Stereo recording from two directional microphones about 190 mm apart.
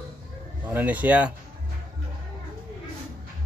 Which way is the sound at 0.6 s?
10° right (ahead or behind).